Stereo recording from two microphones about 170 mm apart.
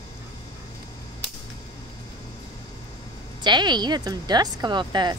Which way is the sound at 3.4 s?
25° right (ahead or behind).